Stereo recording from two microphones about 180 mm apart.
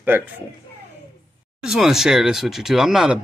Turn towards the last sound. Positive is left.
turn(degrees=-5)  # may be behind; listen again after turning